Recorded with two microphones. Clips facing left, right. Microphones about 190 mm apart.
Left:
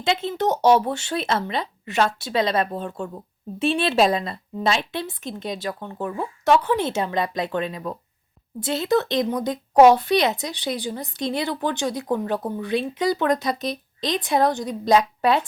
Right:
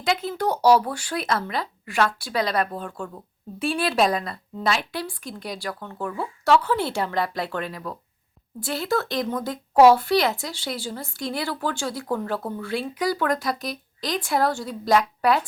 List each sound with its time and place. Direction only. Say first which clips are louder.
0.0 s speech: left 2 dB; 25° left (ahead or behind)